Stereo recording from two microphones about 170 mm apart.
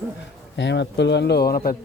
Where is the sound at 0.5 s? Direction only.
90° left; by 1.7 s 60° left (ahead or behind).